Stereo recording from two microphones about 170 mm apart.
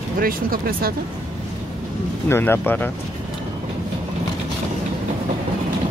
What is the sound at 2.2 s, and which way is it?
Speech, 15° left (ahead or behind).